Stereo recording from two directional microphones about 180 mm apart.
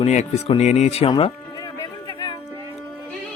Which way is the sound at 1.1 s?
20° left (ahead or behind).